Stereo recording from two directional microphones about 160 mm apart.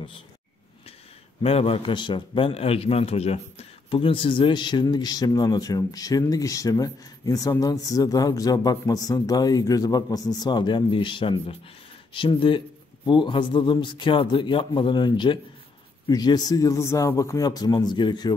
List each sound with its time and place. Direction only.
1.4 s a man's voice: 40° left (ahead or behind)